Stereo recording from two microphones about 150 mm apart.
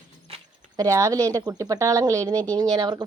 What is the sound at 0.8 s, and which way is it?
A woman's voice, 20° right (ahead or behind).